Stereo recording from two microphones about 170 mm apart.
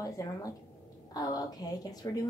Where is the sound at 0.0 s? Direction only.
20° left (ahead or behind).